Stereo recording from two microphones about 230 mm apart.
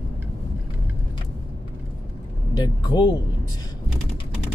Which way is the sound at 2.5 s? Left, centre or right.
Centre.